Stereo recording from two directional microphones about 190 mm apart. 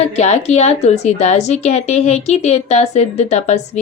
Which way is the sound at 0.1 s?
35° left (ahead or behind).